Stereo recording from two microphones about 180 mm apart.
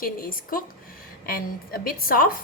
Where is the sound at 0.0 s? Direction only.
55° left (ahead or behind).